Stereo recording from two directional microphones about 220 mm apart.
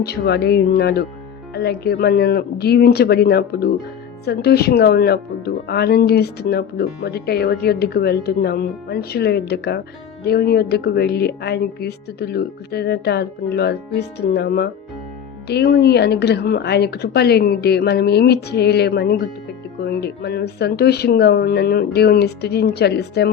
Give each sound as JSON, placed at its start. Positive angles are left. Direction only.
{"t": 0.0, "sound": "speech", "side_deg": 45}